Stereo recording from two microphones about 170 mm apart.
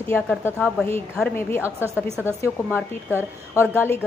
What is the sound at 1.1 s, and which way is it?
Speech, 10° left (ahead or behind).